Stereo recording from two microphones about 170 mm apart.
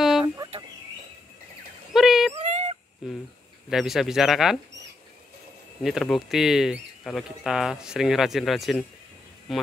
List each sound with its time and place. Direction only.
0.0 s fowl: centre (ahead or behind)
2.0 s dog: centre (ahead or behind)
2.3 s a sound: 40° right (ahead or behind)
3.0 s speech: centre (ahead or behind)
5.8 s speech: centre (ahead or behind)